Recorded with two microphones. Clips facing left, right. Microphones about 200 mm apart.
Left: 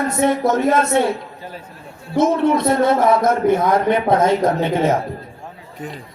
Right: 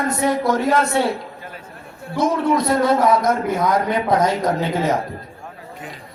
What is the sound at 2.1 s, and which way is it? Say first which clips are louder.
A man's voice: left 3 dB; 25° left (ahead or behind).